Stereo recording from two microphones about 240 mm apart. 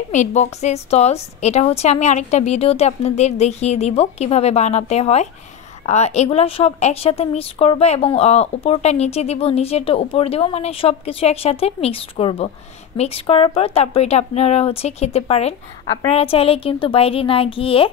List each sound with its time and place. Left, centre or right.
0.1 s a woman's voice: left